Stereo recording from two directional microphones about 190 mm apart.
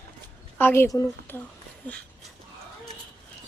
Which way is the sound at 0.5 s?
10° left (ahead or behind).